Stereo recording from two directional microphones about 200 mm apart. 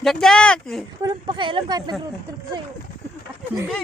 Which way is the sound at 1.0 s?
25° right (ahead or behind).